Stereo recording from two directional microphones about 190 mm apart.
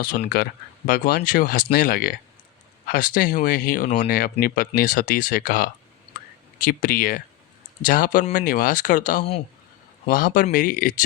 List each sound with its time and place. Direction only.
0.0 s speech: 50° left (ahead or behind)